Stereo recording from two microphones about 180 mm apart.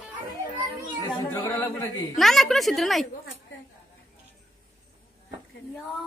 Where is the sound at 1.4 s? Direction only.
10° left (ahead or behind).